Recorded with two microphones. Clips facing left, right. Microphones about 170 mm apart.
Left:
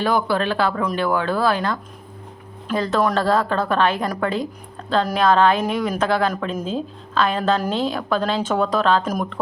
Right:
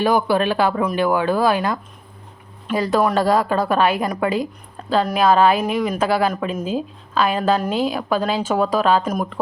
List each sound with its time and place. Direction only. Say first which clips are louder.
0.0 s a woman's voice: right 3 dB; 15° right (ahead or behind)